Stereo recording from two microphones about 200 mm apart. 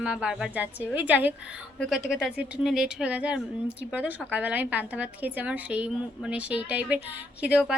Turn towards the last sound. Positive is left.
turn(degrees=-5)  # may be behind; listen again after turning